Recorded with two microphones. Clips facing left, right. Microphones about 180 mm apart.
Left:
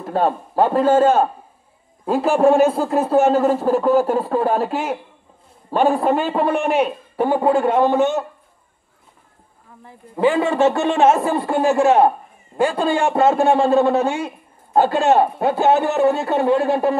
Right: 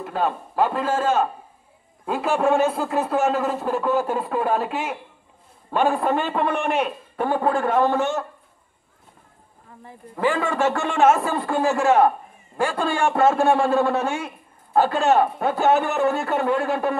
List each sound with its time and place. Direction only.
0.0 s speech: 35° left (ahead or behind)
6.5 s a man's voice: 10° left (ahead or behind)
6.8 s a man's voice: 20° left (ahead or behind)
10.1 s a man's voice: 20° left (ahead or behind)